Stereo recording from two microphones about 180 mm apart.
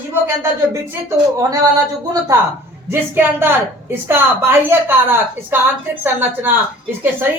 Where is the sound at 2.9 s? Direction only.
10° right (ahead or behind).